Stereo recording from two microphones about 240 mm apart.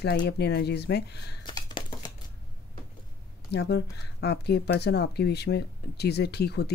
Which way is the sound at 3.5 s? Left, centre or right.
Left.